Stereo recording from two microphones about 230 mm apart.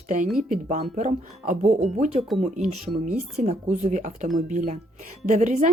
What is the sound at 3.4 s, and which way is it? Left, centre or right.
A woman's voice, right.